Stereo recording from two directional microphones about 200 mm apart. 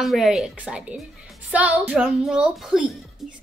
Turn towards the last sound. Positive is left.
turn(degrees=0)  # may be behind; listen again after turning